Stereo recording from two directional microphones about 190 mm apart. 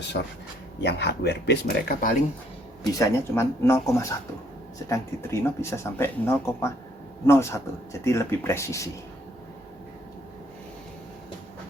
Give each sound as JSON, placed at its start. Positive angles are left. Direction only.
{"t": 0.8, "sound": "speech", "side_deg": 60}
{"t": 3.0, "sound": "speech", "side_deg": 15}